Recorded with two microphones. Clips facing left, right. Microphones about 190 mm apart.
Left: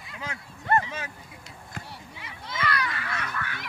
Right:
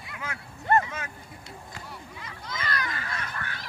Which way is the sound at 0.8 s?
25° left (ahead or behind).